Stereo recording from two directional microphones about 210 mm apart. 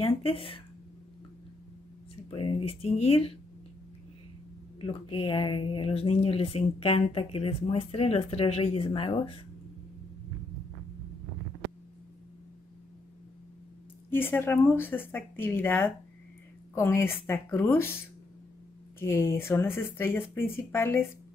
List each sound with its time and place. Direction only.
0.0 s a sound: 25° left (ahead or behind)
2.2 s speech: 25° left (ahead or behind)
4.7 s speech: 25° left (ahead or behind)
14.1 s speech: 10° left (ahead or behind)
18.9 s speech: 10° left (ahead or behind)